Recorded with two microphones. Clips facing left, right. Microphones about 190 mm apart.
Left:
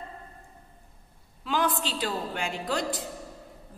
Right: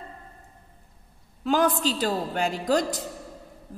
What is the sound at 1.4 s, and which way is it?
A woman's voice, 45° right (ahead or behind).